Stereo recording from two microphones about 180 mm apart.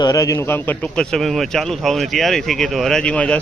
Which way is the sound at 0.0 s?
20° left (ahead or behind).